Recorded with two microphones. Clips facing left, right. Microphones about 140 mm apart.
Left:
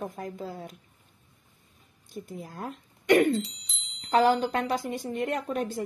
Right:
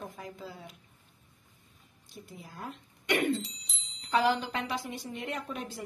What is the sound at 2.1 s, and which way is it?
Speech, 45° left (ahead or behind).